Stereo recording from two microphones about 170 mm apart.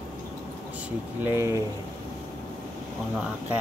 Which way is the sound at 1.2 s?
15° right (ahead or behind).